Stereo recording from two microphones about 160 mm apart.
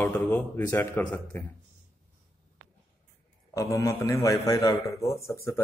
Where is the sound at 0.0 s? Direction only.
10° left (ahead or behind).